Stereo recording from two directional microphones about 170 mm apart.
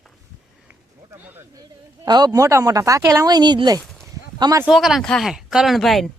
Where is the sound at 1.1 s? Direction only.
10° right (ahead or behind).